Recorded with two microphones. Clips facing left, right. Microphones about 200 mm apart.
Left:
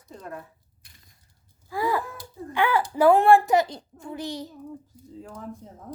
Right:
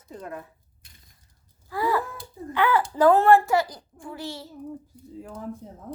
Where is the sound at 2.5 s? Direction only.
15° left (ahead or behind).